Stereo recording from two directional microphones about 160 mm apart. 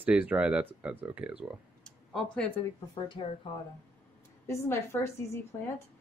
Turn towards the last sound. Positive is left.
turn(degrees=15)  # may be behind; listen again after turning